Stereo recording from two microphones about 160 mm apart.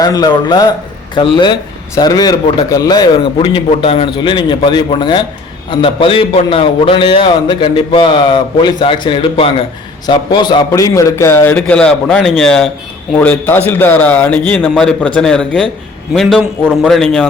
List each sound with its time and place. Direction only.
0.0 s a man's voice: 25° left (ahead or behind); by 17.2 s 5° left (ahead or behind)